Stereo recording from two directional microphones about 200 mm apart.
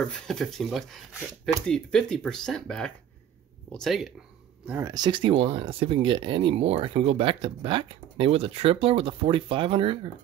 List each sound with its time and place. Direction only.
0.1 s speech: centre (ahead or behind)
4.6 s speech: 15° right (ahead or behind)